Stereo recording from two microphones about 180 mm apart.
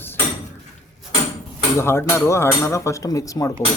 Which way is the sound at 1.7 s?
15° left (ahead or behind).